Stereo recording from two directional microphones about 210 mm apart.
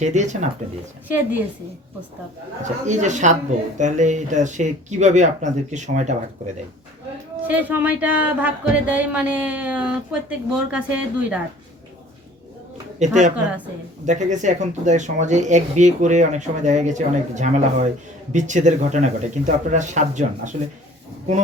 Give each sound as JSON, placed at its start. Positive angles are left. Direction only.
{"t": 0.0, "sound": "speech", "side_deg": -35}
{"t": 1.0, "sound": "speech", "side_deg": -10}
{"t": 2.8, "sound": "speech", "side_deg": -35}
{"t": 7.4, "sound": "speech", "side_deg": -10}
{"t": 13.0, "sound": "speech", "side_deg": -35}